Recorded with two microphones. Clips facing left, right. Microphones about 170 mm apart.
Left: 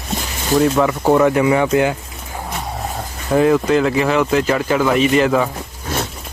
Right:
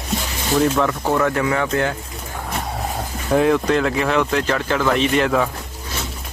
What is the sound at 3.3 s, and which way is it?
Speech, centre (ahead or behind).